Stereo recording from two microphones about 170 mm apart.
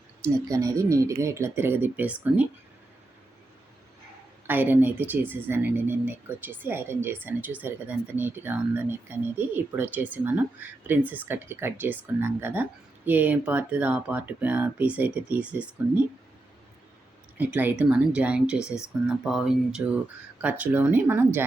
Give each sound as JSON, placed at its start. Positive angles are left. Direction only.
{"t": 0.4, "sound": "speech", "side_deg": -20}
{"t": 4.4, "sound": "speech", "side_deg": -10}
{"t": 17.3, "sound": "speech", "side_deg": -10}
{"t": 18.6, "sound": "speech", "side_deg": 15}
{"t": 19.0, "sound": "speech", "side_deg": -5}